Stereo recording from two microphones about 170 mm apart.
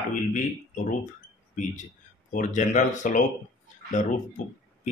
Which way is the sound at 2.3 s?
45° left (ahead or behind).